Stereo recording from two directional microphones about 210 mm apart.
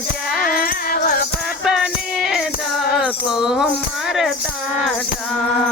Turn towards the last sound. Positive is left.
turn(degrees=0)  # may be behind; listen again after turning